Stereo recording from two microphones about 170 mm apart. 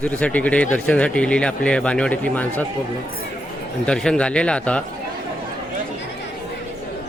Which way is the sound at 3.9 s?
5° left (ahead or behind).